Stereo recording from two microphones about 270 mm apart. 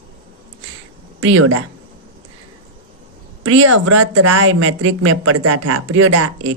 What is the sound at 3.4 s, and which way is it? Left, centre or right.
Speech, right.